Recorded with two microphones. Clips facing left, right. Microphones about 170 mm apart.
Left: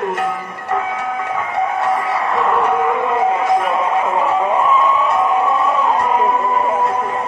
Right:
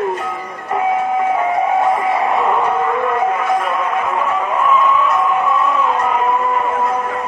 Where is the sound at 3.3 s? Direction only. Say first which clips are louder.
Left 2 dB; 20° left (ahead or behind).